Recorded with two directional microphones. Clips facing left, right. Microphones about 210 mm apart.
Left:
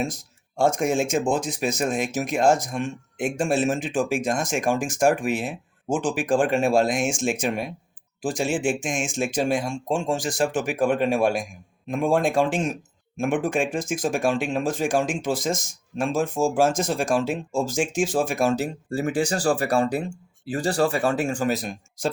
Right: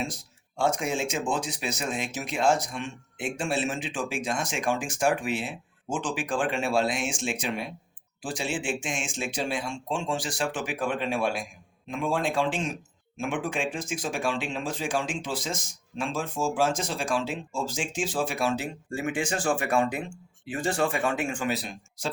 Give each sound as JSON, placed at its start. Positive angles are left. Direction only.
{"t": 0.0, "sound": "speech", "side_deg": 45}